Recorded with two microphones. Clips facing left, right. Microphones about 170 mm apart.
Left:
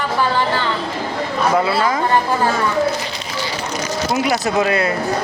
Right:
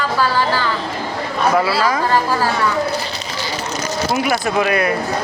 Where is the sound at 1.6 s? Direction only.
20° left (ahead or behind).